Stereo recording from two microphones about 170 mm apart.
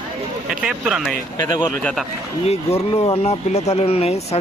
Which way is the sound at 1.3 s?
25° left (ahead or behind).